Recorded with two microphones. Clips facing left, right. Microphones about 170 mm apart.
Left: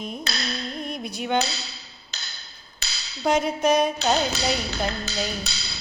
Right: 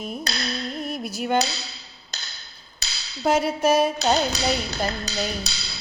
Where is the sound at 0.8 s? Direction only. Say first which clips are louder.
Right 2 dB; 5° right (ahead or behind).